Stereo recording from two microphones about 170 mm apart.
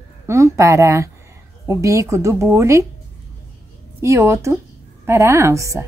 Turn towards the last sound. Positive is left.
turn(degrees=-15)  # may be behind; listen again after turning